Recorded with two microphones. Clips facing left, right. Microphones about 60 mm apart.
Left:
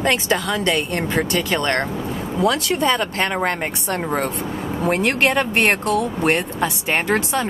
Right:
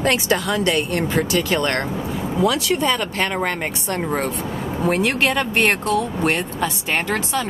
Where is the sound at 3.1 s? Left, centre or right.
Centre.